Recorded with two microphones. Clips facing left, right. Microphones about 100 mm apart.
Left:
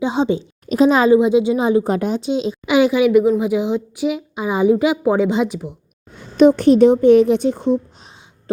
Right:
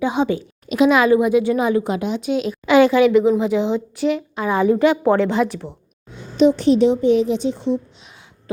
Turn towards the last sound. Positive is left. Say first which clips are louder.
# left 4 dB
turn(degrees=45)  # may be behind; listen again after turning